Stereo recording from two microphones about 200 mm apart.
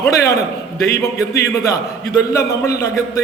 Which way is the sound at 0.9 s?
50° left (ahead or behind).